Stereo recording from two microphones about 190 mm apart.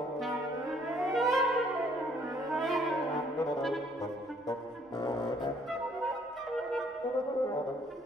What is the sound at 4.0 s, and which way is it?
Music, 20° left (ahead or behind).